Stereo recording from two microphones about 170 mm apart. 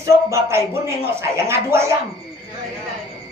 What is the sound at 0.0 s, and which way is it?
Speech, 15° right (ahead or behind).